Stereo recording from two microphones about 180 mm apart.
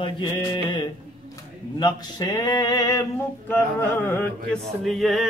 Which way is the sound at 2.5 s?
20° left (ahead or behind).